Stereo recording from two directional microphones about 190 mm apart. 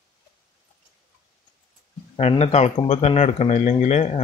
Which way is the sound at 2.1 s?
35° left (ahead or behind).